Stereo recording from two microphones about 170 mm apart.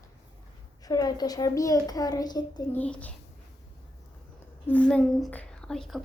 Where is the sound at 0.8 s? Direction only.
20° left (ahead or behind).